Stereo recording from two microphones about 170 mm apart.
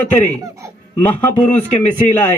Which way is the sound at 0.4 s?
20° right (ahead or behind).